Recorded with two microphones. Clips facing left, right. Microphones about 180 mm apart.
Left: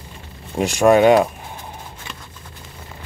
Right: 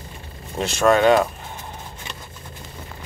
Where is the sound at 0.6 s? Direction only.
15° left (ahead or behind).